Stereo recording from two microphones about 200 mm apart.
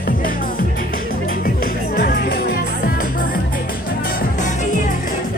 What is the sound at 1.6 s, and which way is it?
Music, 50° left (ahead or behind).